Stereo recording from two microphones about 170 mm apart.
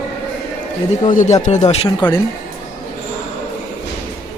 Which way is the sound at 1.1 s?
50° left (ahead or behind).